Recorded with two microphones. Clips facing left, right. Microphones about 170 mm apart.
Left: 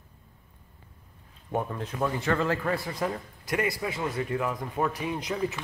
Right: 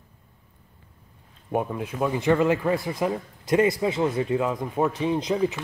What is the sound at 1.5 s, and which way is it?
Speech, 15° right (ahead or behind).